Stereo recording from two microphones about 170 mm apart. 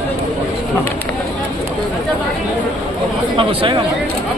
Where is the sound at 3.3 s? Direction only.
30° right (ahead or behind).